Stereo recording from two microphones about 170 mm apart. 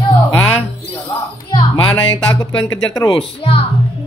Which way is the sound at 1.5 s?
30° left (ahead or behind).